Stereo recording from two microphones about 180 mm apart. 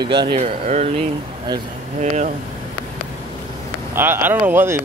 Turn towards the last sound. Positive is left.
turn(degrees=-10)  # may be behind; listen again after turning